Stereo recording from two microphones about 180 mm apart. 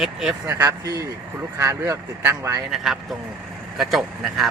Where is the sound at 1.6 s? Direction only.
15° right (ahead or behind).